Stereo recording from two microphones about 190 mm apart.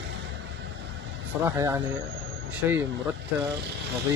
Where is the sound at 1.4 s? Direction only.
15° right (ahead or behind).